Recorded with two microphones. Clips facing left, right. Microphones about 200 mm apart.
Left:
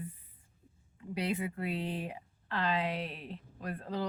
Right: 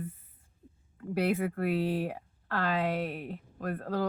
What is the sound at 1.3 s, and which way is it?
Speech, 50° right (ahead or behind).